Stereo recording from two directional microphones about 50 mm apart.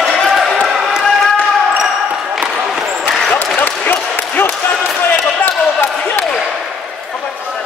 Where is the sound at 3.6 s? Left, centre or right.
Left.